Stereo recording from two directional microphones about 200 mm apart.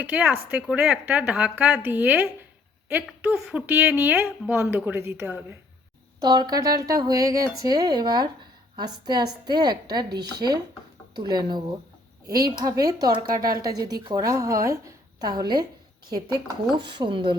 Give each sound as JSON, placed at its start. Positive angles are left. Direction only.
{"t": 0.0, "sound": "speech", "side_deg": -5}
{"t": 6.1, "sound": "speech", "side_deg": -20}